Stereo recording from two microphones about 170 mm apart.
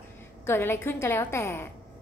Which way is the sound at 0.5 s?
15° left (ahead or behind).